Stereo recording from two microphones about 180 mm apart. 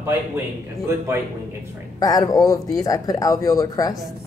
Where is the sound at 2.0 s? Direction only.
20° left (ahead or behind).